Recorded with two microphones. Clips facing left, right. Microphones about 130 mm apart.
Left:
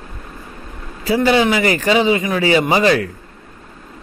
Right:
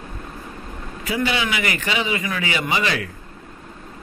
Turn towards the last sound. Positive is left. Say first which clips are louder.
# left 9 dB
turn(degrees=40)  # may be behind; listen again after turning